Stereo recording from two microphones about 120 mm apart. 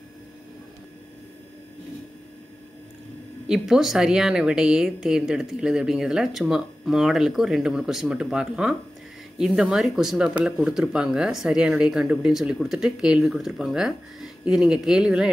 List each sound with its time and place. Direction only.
3.4 s speech: 5° right (ahead or behind)